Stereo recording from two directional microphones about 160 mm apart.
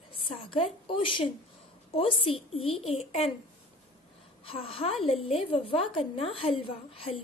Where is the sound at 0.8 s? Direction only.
30° left (ahead or behind).